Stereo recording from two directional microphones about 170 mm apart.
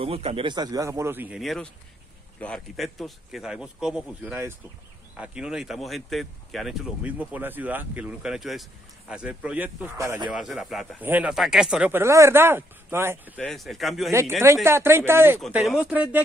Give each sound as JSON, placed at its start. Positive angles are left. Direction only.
{"t": 0.0, "sound": "speech", "side_deg": -35}
{"t": 1.4, "sound": "speech", "side_deg": 0}
{"t": 10.3, "sound": "speech", "side_deg": 0}
{"t": 12.0, "sound": "speech", "side_deg": -15}
{"t": 13.4, "sound": "speech", "side_deg": 0}
{"t": 14.4, "sound": "speech", "side_deg": -15}